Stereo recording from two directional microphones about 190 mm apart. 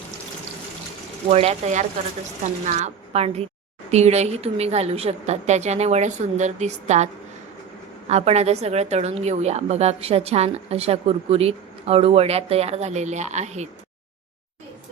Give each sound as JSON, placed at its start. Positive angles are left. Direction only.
{"t": 1.3, "sound": "a woman's voice", "side_deg": -35}